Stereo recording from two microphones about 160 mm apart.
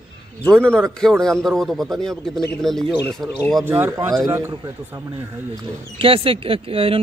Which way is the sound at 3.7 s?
15° right (ahead or behind).